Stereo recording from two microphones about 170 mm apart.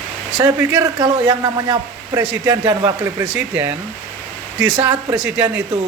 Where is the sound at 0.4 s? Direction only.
20° right (ahead or behind).